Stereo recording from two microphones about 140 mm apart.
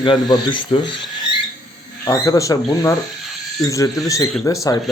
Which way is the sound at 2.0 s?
20° left (ahead or behind).